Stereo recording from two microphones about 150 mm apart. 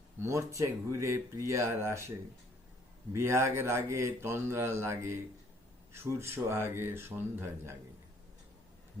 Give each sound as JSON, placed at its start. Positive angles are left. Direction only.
{"t": 0.2, "sound": "a man's voice", "side_deg": -20}